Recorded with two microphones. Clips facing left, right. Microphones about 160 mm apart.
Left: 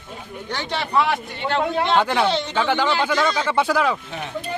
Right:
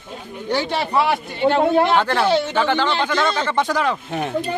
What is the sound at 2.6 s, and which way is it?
Speech, 10° left (ahead or behind).